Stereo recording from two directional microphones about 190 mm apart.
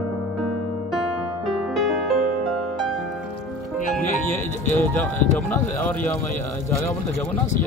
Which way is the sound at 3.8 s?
40° left (ahead or behind).